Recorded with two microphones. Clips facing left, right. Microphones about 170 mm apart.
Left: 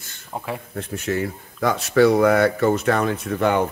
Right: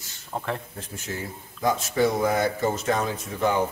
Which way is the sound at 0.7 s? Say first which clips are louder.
Left 10 dB; 65° left (ahead or behind).